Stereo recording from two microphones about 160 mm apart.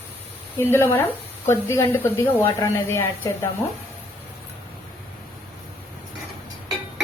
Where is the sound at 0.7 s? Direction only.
15° left (ahead or behind).